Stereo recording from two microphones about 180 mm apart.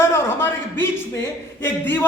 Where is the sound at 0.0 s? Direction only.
15° left (ahead or behind).